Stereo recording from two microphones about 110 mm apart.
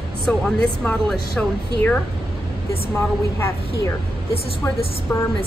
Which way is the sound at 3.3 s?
25° left (ahead or behind).